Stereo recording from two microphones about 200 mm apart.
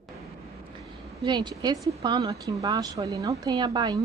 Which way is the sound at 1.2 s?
20° right (ahead or behind).